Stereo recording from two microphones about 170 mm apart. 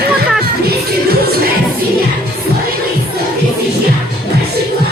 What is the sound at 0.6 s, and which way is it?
Speech, 65° right (ahead or behind).